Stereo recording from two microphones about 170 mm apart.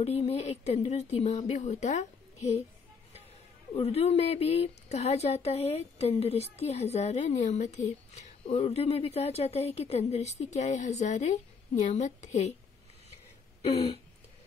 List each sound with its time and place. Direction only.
0.0 s a woman's voice: 35° left (ahead or behind)
3.7 s a woman's voice: 35° left (ahead or behind)